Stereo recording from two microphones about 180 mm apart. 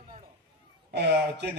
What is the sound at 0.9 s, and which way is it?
Speech, 70° right (ahead or behind).